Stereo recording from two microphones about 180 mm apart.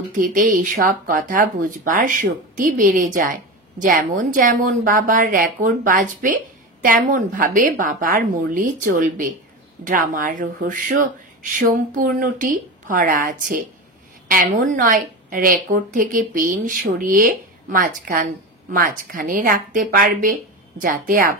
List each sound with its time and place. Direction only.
0.1 s speech: 50° right (ahead or behind)